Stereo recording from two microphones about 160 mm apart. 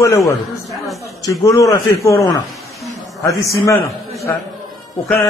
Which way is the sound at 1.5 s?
20° left (ahead or behind).